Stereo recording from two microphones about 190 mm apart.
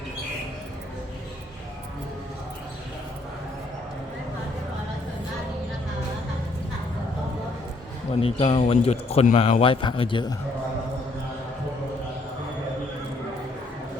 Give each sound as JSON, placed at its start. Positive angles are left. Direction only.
{"t": 8.2, "sound": "a man's voice", "side_deg": 30}